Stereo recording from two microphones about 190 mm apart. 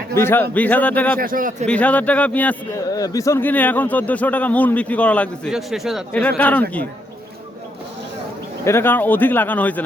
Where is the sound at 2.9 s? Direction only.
20° left (ahead or behind).